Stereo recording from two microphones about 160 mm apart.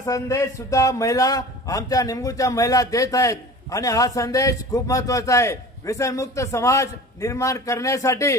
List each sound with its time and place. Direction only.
0.0 s a man's voice: 20° left (ahead or behind)